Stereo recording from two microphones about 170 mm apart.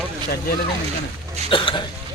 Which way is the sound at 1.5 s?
30° left (ahead or behind).